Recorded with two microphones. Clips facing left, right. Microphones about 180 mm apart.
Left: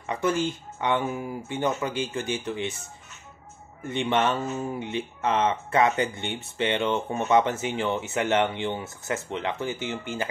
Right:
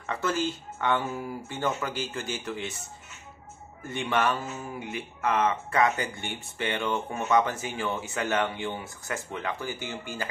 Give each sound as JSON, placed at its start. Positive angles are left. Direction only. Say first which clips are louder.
{"t": 0.0, "sound": "speech", "louder": "left 3 dB", "side_deg": 15}
{"t": 3.8, "sound": "speech", "louder": "left 3 dB", "side_deg": 25}